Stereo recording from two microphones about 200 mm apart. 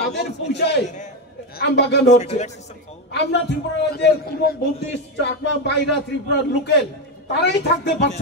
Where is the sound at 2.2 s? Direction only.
35° left (ahead or behind).